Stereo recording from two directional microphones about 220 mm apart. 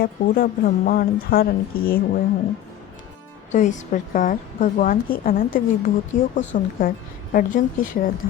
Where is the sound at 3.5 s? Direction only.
35° left (ahead or behind).